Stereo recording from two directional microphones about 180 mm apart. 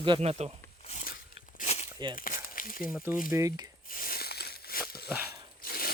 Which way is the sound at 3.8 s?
50° left (ahead or behind).